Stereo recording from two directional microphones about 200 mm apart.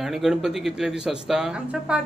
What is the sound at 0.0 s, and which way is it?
A man's voice, centre (ahead or behind).